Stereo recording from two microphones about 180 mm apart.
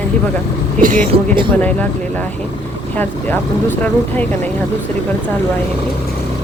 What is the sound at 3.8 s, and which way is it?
Speech, 10° left (ahead or behind).